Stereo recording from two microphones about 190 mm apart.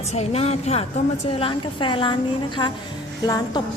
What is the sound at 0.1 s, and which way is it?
A woman's voice, 35° left (ahead or behind).